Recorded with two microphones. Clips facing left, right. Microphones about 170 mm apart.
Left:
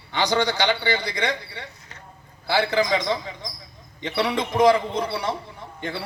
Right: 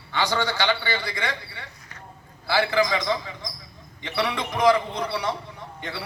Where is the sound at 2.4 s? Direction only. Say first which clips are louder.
Left 1 dB; 20° left (ahead or behind).